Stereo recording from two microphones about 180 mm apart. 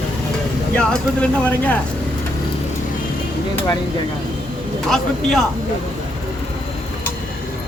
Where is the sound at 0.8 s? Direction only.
5° left (ahead or behind).